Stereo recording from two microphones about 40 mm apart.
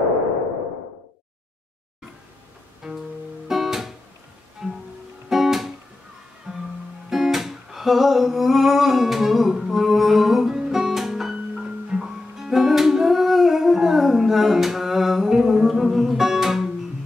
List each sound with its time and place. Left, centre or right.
2.8 s music: centre
5.3 s guitar: centre
6.5 s music: centre